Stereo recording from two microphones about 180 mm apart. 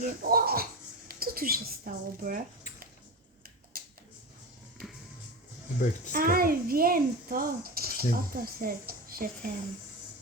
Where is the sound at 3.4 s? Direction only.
55° right (ahead or behind).